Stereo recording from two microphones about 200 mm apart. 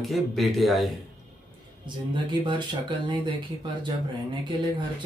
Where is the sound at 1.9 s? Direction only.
25° right (ahead or behind).